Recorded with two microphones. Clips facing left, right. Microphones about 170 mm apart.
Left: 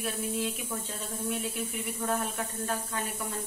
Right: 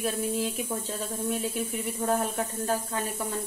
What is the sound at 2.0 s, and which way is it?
A woman's voice, 35° right (ahead or behind).